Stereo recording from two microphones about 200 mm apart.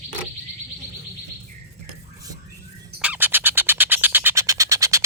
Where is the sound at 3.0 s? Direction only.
10° right (ahead or behind).